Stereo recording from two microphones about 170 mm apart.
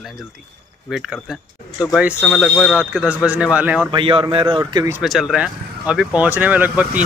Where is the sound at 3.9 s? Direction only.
30° right (ahead or behind).